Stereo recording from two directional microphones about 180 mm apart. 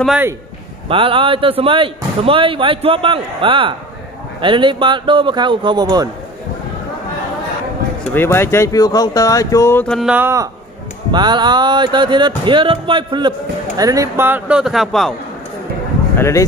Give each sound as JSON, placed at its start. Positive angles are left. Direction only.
{"t": 0.8, "sound": "a man's voice", "side_deg": -30}
{"t": 8.1, "sound": "speech", "side_deg": 15}
{"t": 9.8, "sound": "a man's voice", "side_deg": -5}
{"t": 16.2, "sound": "speech", "side_deg": 15}